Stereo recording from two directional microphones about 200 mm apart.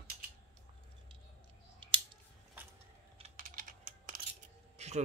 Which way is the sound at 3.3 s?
45° right (ahead or behind).